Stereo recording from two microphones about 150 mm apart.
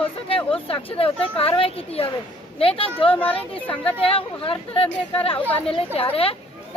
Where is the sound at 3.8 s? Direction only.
40° left (ahead or behind).